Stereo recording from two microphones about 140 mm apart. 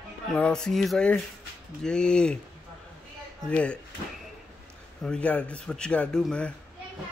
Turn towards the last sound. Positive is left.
turn(degrees=5)  # may be behind; listen again after turning